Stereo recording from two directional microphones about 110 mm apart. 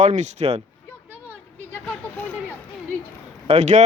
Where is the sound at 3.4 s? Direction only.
90° right.